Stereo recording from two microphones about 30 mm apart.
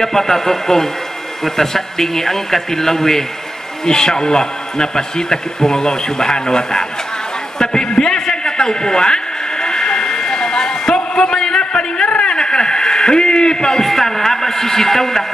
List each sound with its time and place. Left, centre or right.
0.0 s speech: centre
7.5 s a sound: left
13.8 s speech: centre